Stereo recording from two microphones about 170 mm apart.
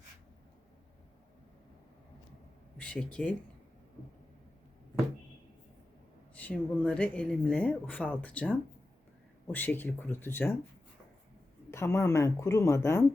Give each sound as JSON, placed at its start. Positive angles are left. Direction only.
{"t": 2.7, "sound": "speech", "side_deg": 5}
{"t": 6.3, "sound": "speech", "side_deg": 10}
{"t": 11.7, "sound": "speech", "side_deg": 15}